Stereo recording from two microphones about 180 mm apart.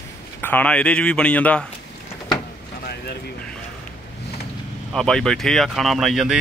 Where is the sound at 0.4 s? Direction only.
10° left (ahead or behind).